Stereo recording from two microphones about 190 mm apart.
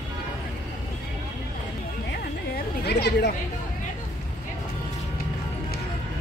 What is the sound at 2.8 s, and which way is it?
Chatter, 60° left (ahead or behind).